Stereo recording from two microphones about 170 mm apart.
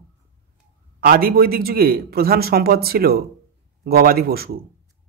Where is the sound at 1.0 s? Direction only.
60° right (ahead or behind).